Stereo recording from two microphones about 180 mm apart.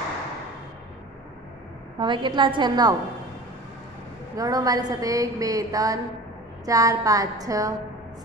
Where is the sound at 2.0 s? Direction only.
25° right (ahead or behind).